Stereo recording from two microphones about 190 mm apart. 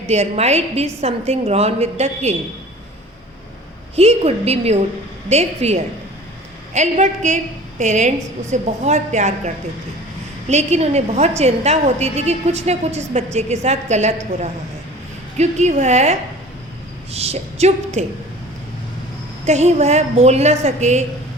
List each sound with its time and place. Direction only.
0.1 s a woman's voice: 35° right (ahead or behind)
3.9 s a woman's voice: 35° right (ahead or behind)
10.5 s a woman's voice: 35° right (ahead or behind)
19.5 s a woman's voice: 35° right (ahead or behind)